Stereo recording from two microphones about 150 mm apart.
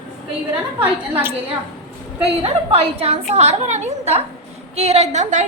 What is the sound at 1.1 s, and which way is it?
Speech, 15° right (ahead or behind).